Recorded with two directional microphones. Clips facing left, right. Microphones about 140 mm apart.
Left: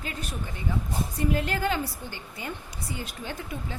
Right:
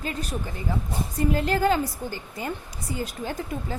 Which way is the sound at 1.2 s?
35° right (ahead or behind).